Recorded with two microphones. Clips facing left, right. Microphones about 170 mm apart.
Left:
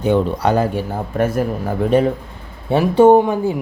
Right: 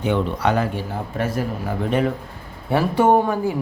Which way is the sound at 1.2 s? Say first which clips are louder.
Left 6 dB; 50° left (ahead or behind).